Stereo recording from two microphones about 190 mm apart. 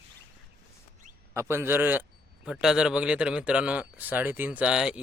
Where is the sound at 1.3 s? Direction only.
15° right (ahead or behind).